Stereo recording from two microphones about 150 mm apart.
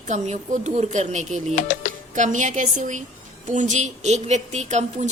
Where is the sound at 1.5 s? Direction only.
60° left (ahead or behind).